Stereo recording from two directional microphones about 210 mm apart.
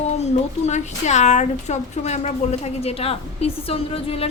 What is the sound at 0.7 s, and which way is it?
A woman's voice, 35° left (ahead or behind).